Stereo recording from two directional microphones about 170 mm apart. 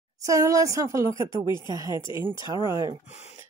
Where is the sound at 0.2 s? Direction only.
20° right (ahead or behind).